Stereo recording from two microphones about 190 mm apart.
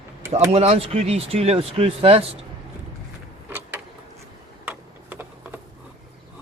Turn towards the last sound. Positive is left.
turn(degrees=-10)  # may be behind; listen again after turning